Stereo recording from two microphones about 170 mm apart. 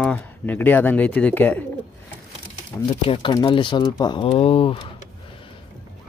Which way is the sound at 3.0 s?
30° left (ahead or behind).